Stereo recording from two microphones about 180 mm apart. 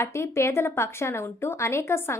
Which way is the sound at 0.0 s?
15° left (ahead or behind).